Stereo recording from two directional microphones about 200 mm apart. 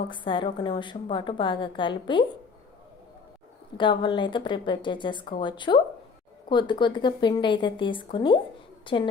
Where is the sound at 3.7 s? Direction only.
25° left (ahead or behind).